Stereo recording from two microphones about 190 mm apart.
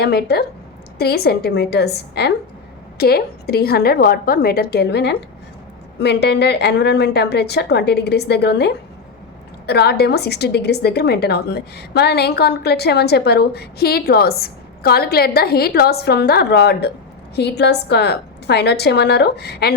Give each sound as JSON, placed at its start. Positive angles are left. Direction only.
{"t": 0.0, "sound": "a woman's voice", "side_deg": 55}